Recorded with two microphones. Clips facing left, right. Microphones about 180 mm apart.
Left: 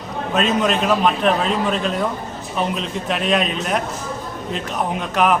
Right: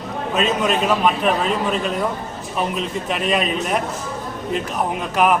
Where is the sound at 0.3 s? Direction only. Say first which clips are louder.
Left 1 dB; 5° right (ahead or behind).